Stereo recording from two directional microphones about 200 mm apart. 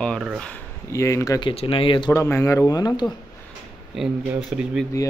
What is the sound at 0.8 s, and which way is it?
Speech, 15° left (ahead or behind).